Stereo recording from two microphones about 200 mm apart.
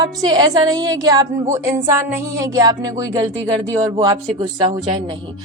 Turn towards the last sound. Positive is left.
turn(degrees=-20)  # may be behind; listen again after turning